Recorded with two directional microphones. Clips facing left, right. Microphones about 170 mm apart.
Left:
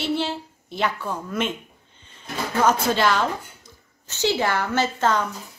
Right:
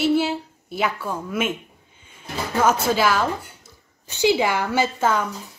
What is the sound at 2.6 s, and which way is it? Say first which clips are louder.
A woman's voice: right 1 dB; 5° right (ahead or behind).